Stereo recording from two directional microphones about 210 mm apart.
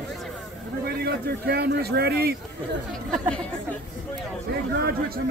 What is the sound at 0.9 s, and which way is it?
A man's voice, 50° right (ahead or behind).